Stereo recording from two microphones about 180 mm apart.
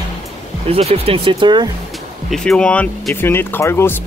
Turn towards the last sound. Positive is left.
turn(degrees=15)  # may be behind; listen again after turning